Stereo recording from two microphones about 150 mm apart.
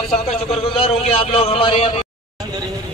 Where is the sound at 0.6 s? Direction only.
40° left (ahead or behind).